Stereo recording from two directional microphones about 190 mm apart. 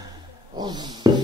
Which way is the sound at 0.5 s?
20° right (ahead or behind).